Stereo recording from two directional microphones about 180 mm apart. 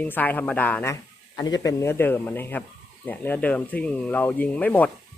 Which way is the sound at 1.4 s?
20° left (ahead or behind).